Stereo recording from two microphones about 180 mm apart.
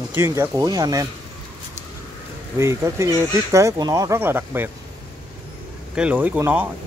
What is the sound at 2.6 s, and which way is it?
Speech, 15° right (ahead or behind).